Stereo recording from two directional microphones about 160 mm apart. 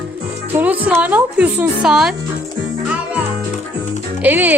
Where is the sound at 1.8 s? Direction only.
5° right (ahead or behind).